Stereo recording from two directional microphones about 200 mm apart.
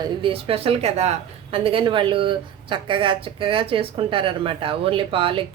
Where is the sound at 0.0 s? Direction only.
25° right (ahead or behind).